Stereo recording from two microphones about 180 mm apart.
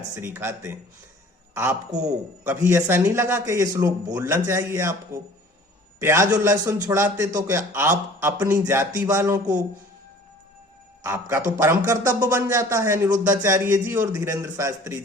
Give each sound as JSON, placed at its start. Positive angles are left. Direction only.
{"t": 0.2, "sound": "a man's voice", "side_deg": -15}
{"t": 1.9, "sound": "a man's voice", "side_deg": -40}
{"t": 2.5, "sound": "a man's voice", "side_deg": -15}
{"t": 11.0, "sound": "a man's voice", "side_deg": -15}